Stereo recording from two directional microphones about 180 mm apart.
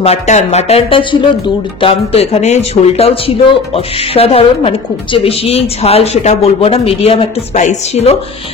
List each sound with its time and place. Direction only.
0.0 s speech: 35° left (ahead or behind)